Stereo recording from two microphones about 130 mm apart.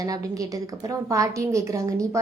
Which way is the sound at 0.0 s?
25° right (ahead or behind).